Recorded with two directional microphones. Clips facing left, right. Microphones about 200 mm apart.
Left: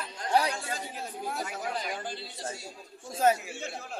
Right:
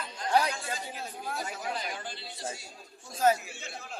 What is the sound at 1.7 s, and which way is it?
Speech, 40° left (ahead or behind).